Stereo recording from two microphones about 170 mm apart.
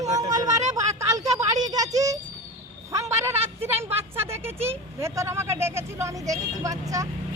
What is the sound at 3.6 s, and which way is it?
Speech, 15° right (ahead or behind).